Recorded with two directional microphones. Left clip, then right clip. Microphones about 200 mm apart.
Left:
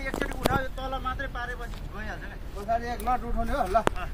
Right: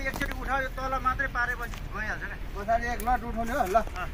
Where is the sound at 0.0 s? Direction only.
5° left (ahead or behind).